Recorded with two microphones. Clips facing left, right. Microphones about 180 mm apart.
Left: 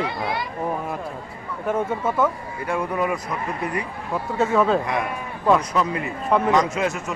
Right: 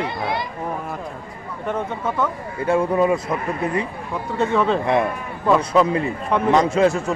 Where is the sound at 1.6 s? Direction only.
5° left (ahead or behind).